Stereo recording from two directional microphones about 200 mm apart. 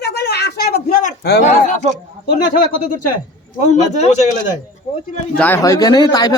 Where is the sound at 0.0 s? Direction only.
50° left (ahead or behind).